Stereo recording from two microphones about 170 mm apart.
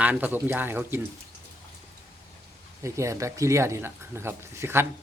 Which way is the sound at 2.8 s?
15° right (ahead or behind).